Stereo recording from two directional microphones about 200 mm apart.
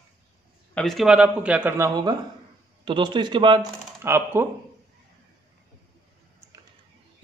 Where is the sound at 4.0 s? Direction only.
10° right (ahead or behind).